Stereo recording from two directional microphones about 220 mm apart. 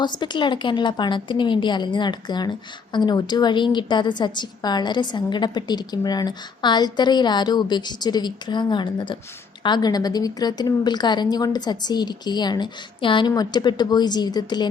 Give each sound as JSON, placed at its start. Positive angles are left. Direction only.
{"t": 0.0, "sound": "a woman's voice", "side_deg": 20}